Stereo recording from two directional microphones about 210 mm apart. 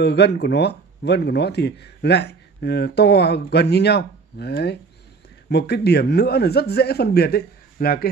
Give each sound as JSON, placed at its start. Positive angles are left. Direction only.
{"t": 0.0, "sound": "speech", "side_deg": 50}